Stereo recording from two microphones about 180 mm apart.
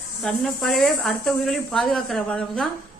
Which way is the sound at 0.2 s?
5° left (ahead or behind).